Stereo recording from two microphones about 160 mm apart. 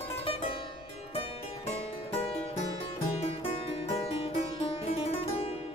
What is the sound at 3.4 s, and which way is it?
Music, 40° left (ahead or behind).